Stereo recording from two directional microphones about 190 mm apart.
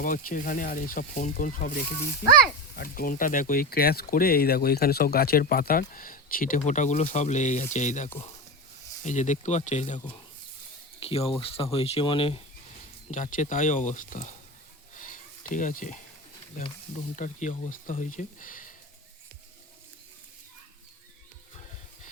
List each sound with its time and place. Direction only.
0.0 s speech: 45° left (ahead or behind)
11.0 s speech: 30° left (ahead or behind)
13.1 s speech: 40° left (ahead or behind)
14.9 s a sound: 45° left (ahead or behind)
17.2 s speech: 40° left (ahead or behind)